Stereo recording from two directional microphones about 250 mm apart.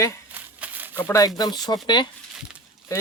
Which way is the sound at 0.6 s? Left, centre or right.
Centre.